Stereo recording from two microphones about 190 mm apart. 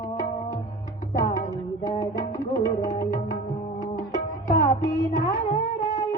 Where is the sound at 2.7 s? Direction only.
40° left (ahead or behind).